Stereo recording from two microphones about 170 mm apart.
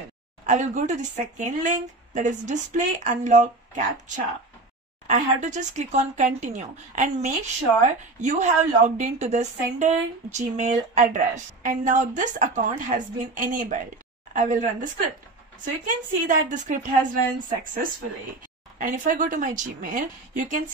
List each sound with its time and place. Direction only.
0.5 s speech: 45° right (ahead or behind)
18.8 s speech: 50° right (ahead or behind)